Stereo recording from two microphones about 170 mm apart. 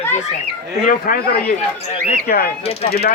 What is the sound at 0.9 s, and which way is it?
A man's voice, 60° left (ahead or behind).